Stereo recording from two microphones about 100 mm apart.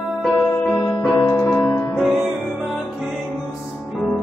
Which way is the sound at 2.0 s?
Centre (ahead or behind).